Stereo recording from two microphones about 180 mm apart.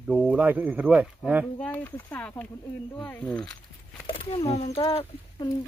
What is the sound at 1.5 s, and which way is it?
Speech, 10° left (ahead or behind).